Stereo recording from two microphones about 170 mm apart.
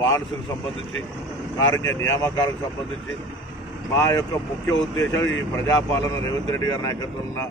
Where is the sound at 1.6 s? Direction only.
20° left (ahead or behind).